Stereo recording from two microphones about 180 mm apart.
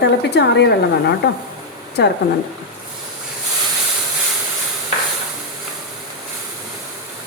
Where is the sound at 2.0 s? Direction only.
70° left (ahead or behind).